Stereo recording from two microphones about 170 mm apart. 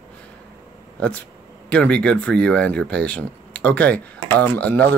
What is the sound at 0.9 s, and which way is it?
Speech, 5° left (ahead or behind).